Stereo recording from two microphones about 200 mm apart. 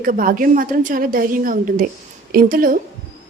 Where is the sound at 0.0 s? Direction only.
45° right (ahead or behind).